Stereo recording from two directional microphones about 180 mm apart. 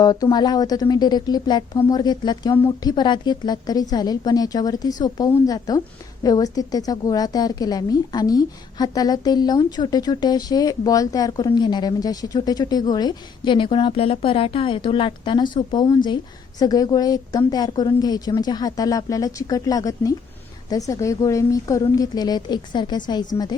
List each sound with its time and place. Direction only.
0.0 s a woman's voice: 20° left (ahead or behind)